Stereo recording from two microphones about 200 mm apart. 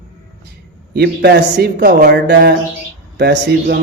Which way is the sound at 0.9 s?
55° right (ahead or behind).